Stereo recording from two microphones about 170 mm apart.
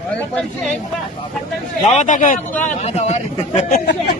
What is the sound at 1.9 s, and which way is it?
Speech, 45° left (ahead or behind).